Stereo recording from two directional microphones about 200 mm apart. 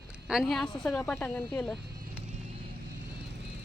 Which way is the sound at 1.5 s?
Centre (ahead or behind).